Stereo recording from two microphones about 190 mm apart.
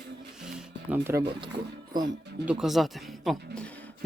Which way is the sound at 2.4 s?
5° right (ahead or behind).